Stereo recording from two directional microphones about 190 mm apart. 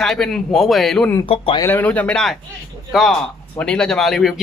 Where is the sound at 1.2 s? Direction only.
30° left (ahead or behind).